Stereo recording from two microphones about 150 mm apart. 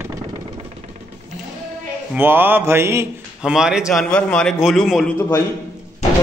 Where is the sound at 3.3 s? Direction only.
5° right (ahead or behind).